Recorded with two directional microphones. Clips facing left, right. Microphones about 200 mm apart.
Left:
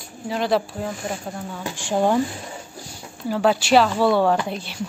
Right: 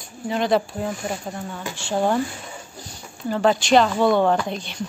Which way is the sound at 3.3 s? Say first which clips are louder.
Even; 5° left (ahead or behind).